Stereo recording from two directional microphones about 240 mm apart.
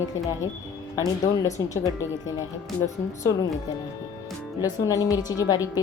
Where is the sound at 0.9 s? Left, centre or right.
Centre.